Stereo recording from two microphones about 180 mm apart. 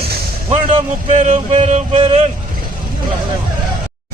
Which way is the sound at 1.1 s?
40° right (ahead or behind).